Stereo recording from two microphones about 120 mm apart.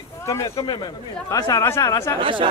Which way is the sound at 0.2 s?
25° left (ahead or behind).